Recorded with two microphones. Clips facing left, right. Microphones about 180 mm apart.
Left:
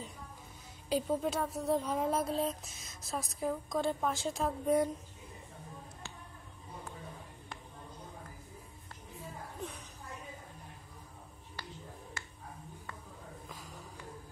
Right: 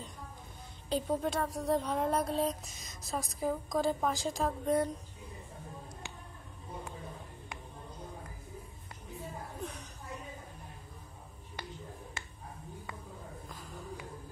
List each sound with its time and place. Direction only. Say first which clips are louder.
0.8 s speech: even; 5° left (ahead or behind)
12.2 s finger snapping: right 1 dB; 25° right (ahead or behind)